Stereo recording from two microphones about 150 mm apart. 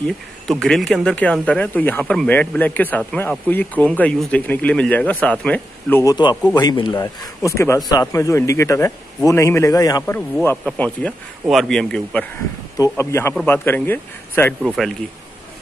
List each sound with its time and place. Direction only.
0.0 s a man's voice: 5° left (ahead or behind)
6.5 s speech: 30° left (ahead or behind)
10.6 s a man's voice: 10° left (ahead or behind)
12.7 s a man's voice: 20° left (ahead or behind)
14.6 s speech: centre (ahead or behind)